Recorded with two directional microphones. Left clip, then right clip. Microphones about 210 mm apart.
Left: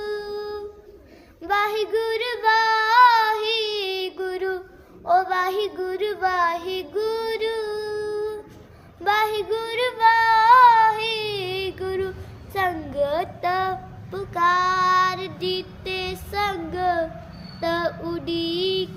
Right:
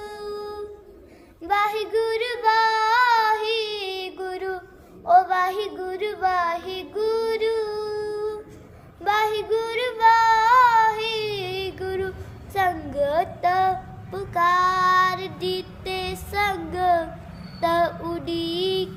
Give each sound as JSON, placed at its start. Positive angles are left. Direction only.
{"t": 0.0, "sound": "music", "side_deg": 50}
{"t": 1.4, "sound": "child singing", "side_deg": 50}